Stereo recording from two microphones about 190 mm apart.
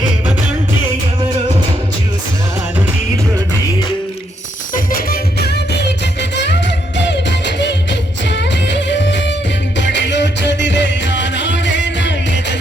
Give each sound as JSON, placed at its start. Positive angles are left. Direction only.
{"t": 4.7, "sound": "music", "side_deg": 50}